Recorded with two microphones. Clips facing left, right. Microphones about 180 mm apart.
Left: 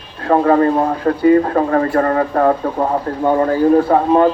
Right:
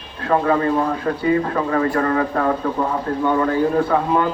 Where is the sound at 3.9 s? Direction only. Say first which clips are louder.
Left 6 dB; 40° left (ahead or behind).